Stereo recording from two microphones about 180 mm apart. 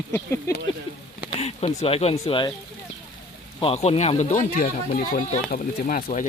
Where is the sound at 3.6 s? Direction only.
35° left (ahead or behind).